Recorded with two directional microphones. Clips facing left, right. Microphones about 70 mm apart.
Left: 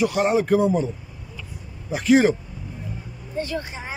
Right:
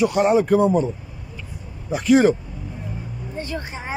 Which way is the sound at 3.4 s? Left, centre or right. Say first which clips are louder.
Left 3 dB; right.